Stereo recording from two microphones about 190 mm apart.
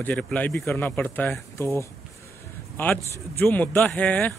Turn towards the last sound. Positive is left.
turn(degrees=5)  # may be behind; listen again after turning